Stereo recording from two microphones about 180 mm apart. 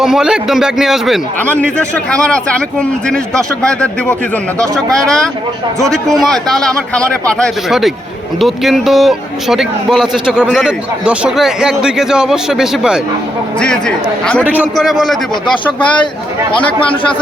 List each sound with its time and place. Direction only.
0.0 s a man's voice: 5° right (ahead or behind)
1.4 s a man's voice: 10° left (ahead or behind)
14.4 s a man's voice: 10° right (ahead or behind)
16.5 s speech: 30° left (ahead or behind)